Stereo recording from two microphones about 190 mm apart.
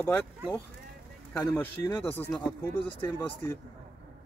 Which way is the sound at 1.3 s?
10° left (ahead or behind).